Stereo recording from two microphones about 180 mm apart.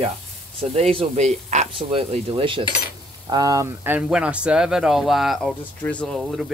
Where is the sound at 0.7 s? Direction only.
35° right (ahead or behind).